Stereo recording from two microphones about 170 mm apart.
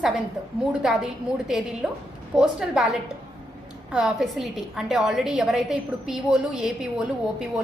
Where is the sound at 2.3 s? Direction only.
5° right (ahead or behind).